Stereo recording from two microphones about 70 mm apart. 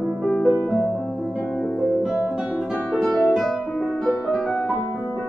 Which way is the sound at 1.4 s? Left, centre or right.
Centre.